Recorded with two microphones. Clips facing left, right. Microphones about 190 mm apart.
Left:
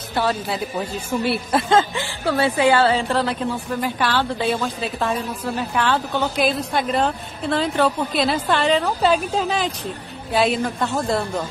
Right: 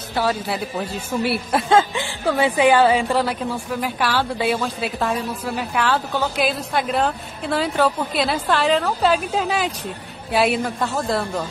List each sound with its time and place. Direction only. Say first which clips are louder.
0.1 s a man's voice: even; 5° right (ahead or behind)